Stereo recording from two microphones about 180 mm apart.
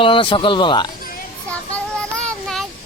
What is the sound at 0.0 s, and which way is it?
Speech, 30° left (ahead or behind).